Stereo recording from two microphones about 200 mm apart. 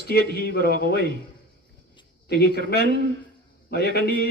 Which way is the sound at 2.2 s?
55° left (ahead or behind).